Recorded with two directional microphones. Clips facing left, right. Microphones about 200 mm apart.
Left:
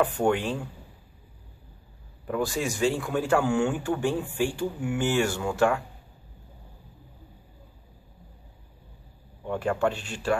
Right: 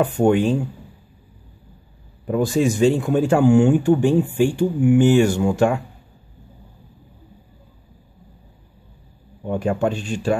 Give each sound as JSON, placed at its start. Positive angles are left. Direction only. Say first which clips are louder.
{"t": 0.2, "sound": "speech", "louder": "right 8 dB", "side_deg": -20}
{"t": 2.2, "sound": "speech", "louder": "right 9 dB", "side_deg": -20}
{"t": 9.4, "sound": "speech", "louder": "right 5 dB", "side_deg": -20}